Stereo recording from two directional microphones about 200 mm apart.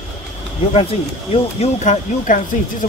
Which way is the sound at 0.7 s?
30° left (ahead or behind).